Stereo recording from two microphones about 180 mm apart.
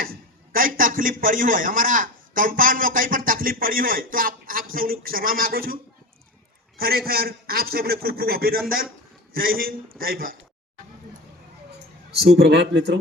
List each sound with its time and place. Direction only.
0.0 s a man's voice: 55° right (ahead or behind)
12.4 s speech: 70° right (ahead or behind)